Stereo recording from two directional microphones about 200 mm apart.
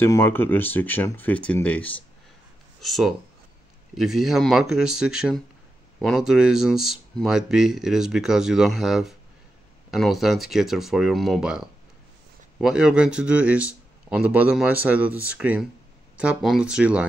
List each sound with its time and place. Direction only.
0.0 s speech: 10° left (ahead or behind); by 17.0 s 5° right (ahead or behind)